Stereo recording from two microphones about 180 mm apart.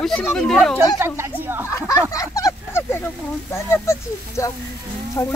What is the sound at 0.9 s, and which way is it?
Speech, 10° right (ahead or behind).